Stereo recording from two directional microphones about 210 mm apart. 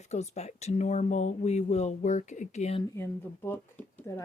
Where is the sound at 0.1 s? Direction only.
30° left (ahead or behind).